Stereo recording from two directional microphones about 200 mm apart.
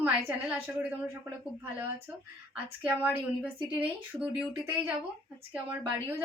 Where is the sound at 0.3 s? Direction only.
5° right (ahead or behind).